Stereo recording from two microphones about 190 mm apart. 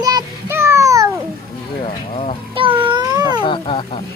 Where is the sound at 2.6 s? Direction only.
25° right (ahead or behind).